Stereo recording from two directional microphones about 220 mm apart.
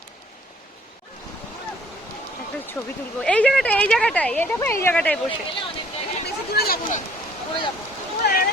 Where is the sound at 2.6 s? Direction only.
10° left (ahead or behind).